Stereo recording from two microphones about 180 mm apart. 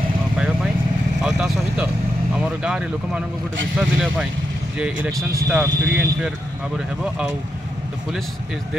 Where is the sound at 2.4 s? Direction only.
5° right (ahead or behind).